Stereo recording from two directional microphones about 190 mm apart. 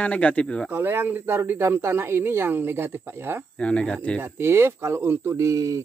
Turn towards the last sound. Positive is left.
turn(degrees=-15)  # may be behind; listen again after turning